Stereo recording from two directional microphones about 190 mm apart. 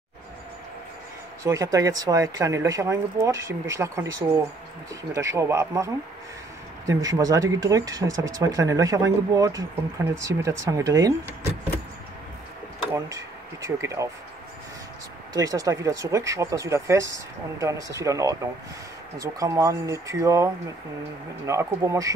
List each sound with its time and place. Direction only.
1.4 s speech: 15° right (ahead or behind)
6.9 s speech: 20° right (ahead or behind)
12.9 s speech: 15° right (ahead or behind)
15.3 s speech: 20° right (ahead or behind)